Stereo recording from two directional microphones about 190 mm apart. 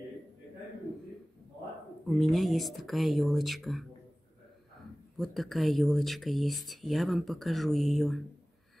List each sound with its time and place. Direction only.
2.0 s speech: centre (ahead or behind)
5.1 s speech: centre (ahead or behind)